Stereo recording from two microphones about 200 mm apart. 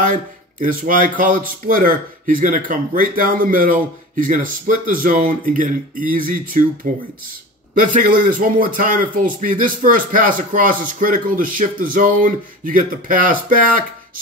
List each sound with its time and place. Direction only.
0.0 s speech: 40° right (ahead or behind)